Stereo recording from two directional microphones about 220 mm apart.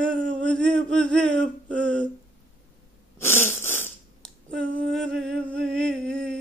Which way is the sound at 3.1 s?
10° left (ahead or behind).